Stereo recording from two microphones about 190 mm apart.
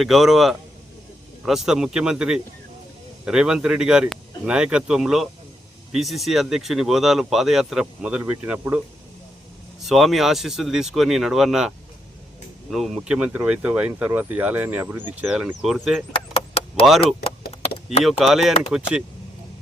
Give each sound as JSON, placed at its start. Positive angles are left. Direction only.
{"t": 0.0, "sound": "speech", "side_deg": 0}
{"t": 9.8, "sound": "speech", "side_deg": 0}
{"t": 12.7, "sound": "speech", "side_deg": 0}
{"t": 16.1, "sound": "chop", "side_deg": 30}
{"t": 18.0, "sound": "speech", "side_deg": 0}